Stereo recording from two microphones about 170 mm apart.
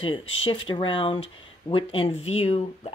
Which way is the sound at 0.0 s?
30° left (ahead or behind).